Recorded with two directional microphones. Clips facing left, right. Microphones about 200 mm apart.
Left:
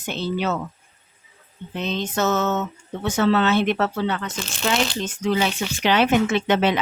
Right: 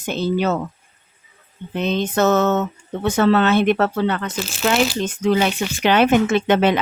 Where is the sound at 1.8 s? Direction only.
55° right (ahead or behind).